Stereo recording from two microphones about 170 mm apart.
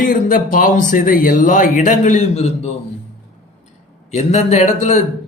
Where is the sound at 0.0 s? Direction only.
55° left (ahead or behind); by 2.7 s 40° left (ahead or behind).